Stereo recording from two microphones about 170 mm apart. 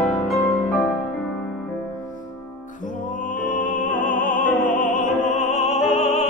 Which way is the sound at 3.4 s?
50° left (ahead or behind).